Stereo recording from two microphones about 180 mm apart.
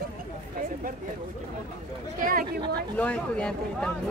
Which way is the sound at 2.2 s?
50° right (ahead or behind).